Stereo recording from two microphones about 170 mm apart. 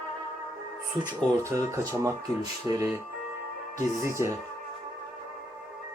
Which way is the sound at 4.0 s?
15° right (ahead or behind).